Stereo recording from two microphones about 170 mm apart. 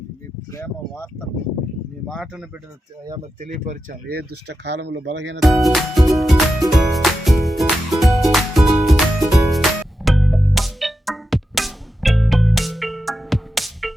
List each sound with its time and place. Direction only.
0.5 s speech: 15° left (ahead or behind)
2.0 s speech: centre (ahead or behind)
3.5 s speech: 50° right (ahead or behind); by 5.4 s 90° right
5.4 s music: centre (ahead or behind)